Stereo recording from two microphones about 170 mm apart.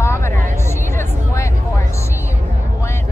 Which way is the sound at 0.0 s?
15° left (ahead or behind).